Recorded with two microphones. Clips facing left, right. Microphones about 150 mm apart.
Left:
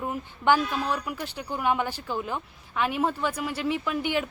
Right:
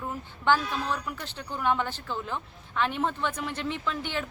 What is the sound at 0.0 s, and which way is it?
A woman's voice, 15° left (ahead or behind).